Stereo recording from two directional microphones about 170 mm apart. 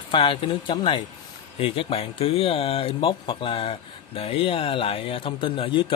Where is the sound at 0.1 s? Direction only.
30° left (ahead or behind).